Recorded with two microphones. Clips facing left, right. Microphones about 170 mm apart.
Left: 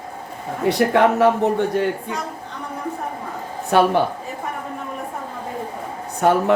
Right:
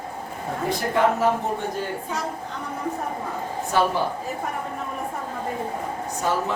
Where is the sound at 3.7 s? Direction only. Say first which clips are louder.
Left 6 dB; 65° left (ahead or behind).